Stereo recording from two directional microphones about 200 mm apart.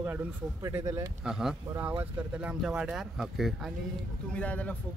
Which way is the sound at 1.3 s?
5° right (ahead or behind).